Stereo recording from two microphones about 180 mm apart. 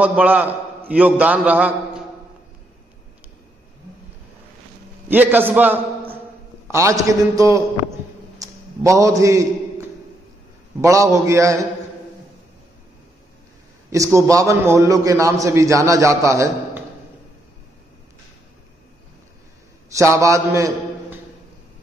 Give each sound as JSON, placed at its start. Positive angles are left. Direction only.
{"t": 0.0, "sound": "a man's voice", "side_deg": -10}
{"t": 5.0, "sound": "a man's voice", "side_deg": -10}
{"t": 8.4, "sound": "a sound", "side_deg": -15}
{"t": 10.8, "sound": "a man's voice", "side_deg": -15}
{"t": 13.8, "sound": "a man's voice", "side_deg": -15}
{"t": 19.9, "sound": "a man's voice", "side_deg": -15}